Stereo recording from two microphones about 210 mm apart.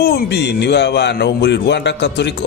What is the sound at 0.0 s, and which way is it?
Speech, 50° left (ahead or behind).